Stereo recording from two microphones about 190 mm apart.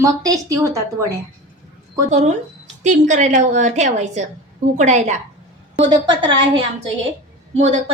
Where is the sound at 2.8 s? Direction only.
40° right (ahead or behind).